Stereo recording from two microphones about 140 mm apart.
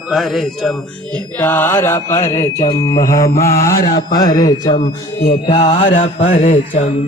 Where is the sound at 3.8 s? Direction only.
90° left.